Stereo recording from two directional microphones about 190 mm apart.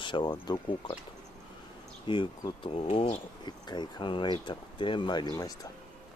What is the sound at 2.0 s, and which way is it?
Speech, 25° left (ahead or behind).